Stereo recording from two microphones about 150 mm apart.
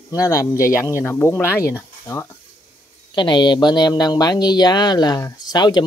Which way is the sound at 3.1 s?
30° left (ahead or behind).